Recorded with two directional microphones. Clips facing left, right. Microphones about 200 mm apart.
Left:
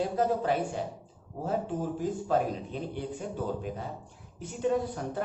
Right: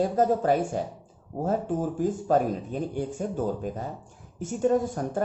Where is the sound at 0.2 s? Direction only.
45° right (ahead or behind).